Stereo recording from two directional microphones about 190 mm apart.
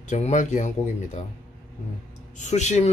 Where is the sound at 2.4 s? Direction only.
40° left (ahead or behind).